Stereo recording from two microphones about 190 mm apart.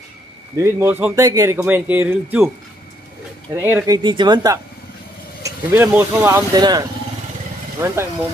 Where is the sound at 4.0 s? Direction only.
25° right (ahead or behind).